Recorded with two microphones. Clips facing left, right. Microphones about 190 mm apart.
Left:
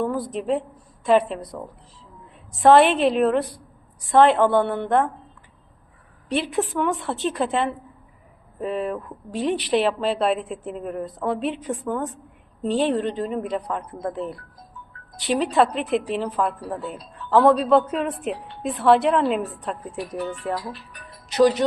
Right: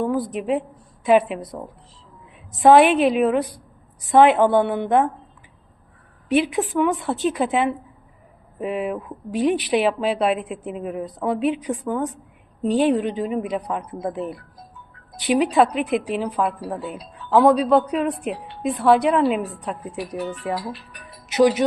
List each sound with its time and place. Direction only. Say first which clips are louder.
0.0 s a woman's voice: right 2 dB; 5° right (ahead or behind)
2.8 s a woman's voice: right 2 dB; centre (ahead or behind)
6.2 s a woman's voice: right 4 dB; 5° right (ahead or behind)
15.4 s a woman's voice: right 2 dB; centre (ahead or behind)